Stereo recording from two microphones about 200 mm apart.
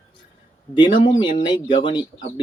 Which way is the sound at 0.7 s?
20° left (ahead or behind).